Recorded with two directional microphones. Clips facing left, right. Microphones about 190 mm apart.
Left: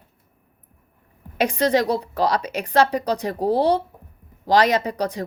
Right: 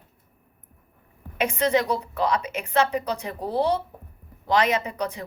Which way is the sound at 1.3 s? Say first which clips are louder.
Left 3 dB; 35° left (ahead or behind).